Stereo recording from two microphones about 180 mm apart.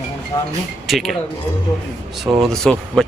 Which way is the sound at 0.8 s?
Centre (ahead or behind).